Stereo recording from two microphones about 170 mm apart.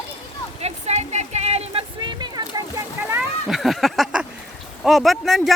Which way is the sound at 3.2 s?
Centre (ahead or behind).